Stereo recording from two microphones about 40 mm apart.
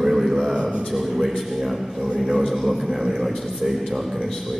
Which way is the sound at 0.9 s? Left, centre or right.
Centre.